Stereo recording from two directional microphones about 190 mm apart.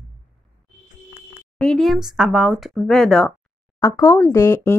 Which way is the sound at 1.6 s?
Centre (ahead or behind).